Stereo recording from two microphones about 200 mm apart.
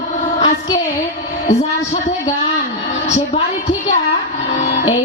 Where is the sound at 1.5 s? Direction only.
35° left (ahead or behind).